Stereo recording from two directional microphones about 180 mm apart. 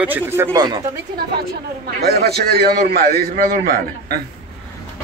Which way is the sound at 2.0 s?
60° right (ahead or behind).